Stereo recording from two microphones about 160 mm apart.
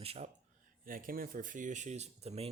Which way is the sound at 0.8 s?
65° right (ahead or behind).